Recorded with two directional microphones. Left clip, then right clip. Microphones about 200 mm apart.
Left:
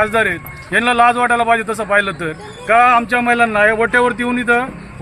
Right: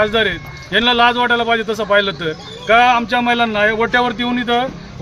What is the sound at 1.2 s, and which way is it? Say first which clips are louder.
Speech: left 1 dB; 10° right (ahead or behind).